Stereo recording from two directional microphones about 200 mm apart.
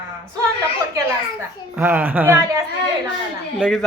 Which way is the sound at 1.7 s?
10° right (ahead or behind).